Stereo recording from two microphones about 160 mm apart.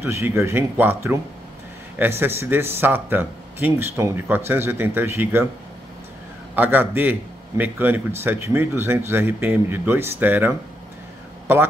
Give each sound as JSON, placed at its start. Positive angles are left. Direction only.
{"t": 0.0, "sound": "a man's voice", "side_deg": -15}
{"t": 6.5, "sound": "a man's voice", "side_deg": -10}